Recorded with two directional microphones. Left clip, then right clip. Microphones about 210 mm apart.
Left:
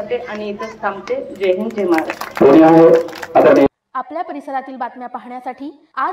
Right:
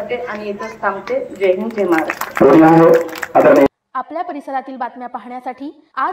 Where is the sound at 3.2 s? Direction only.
20° right (ahead or behind).